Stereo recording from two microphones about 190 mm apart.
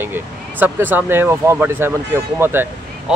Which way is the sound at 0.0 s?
10° right (ahead or behind).